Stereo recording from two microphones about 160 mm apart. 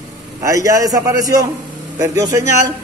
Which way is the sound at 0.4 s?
20° right (ahead or behind).